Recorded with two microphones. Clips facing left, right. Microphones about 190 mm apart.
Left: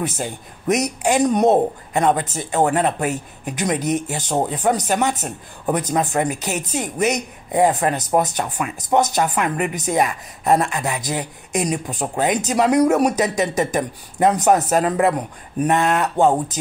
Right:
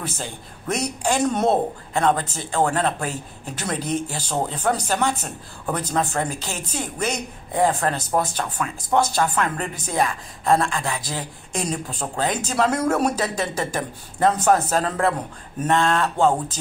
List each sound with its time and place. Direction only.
0.0 s speech: 20° left (ahead or behind)